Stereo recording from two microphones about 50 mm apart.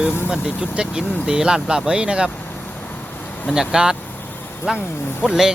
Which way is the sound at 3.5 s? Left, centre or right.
Centre.